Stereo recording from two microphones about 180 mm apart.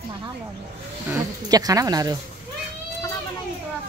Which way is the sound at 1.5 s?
20° right (ahead or behind).